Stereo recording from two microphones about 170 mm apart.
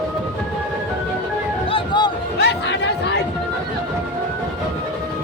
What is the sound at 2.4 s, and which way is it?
Chatter, 90° left.